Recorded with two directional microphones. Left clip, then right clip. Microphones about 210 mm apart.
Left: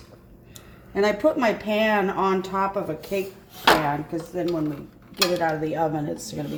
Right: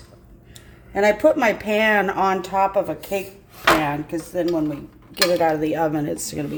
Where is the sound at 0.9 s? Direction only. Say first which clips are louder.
Right 5 dB; 40° right (ahead or behind).